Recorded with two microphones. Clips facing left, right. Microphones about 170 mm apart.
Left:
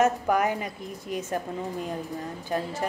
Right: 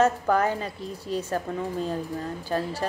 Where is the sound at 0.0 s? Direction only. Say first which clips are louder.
Right 1 dB; 15° left (ahead or behind).